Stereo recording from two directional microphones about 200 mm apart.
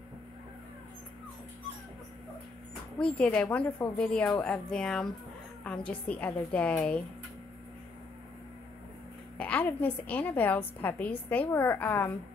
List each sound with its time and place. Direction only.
3.0 s a woman's voice: 5° left (ahead or behind)
9.4 s a woman's voice: 10° left (ahead or behind)